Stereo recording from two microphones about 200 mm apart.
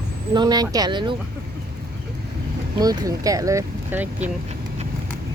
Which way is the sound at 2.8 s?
20° right (ahead or behind).